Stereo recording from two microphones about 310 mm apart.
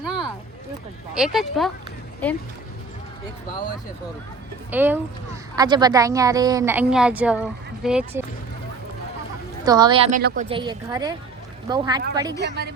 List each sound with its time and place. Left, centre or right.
0.0 s a sound: centre
1.1 s speech: centre
4.7 s speech: centre
9.6 s speech: centre
10.2 s speech: right
10.5 s speech: centre
12.4 s a woman's voice: right